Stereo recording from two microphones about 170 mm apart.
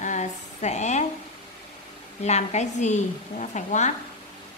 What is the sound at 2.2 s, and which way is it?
Speech, 40° left (ahead or behind).